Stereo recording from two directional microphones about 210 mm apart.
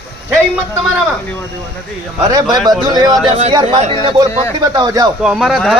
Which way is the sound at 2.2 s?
20° right (ahead or behind).